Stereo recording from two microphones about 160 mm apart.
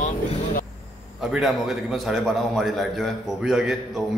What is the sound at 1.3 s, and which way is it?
A man's voice, centre (ahead or behind).